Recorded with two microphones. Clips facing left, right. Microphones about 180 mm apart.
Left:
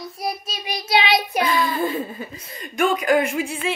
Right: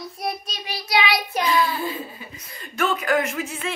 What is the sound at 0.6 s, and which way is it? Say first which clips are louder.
Speech: left 2 dB; 20° left (ahead or behind).